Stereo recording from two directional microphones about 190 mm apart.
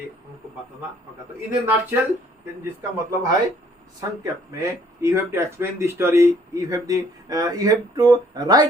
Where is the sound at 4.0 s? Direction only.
20° right (ahead or behind).